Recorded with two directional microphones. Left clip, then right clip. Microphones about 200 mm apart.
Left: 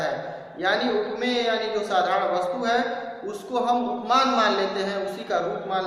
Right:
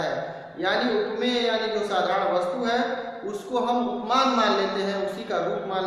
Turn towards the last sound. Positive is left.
turn(degrees=10)  # may be behind; listen again after turning